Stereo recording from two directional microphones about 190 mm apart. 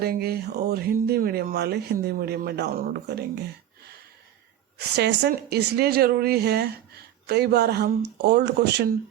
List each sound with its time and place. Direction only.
0.0 s speech: 55° right (ahead or behind)
4.9 s speech: 60° right (ahead or behind)